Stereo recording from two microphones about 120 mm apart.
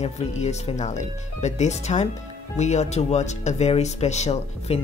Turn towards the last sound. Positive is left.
turn(degrees=65)  # may be behind; listen again after turning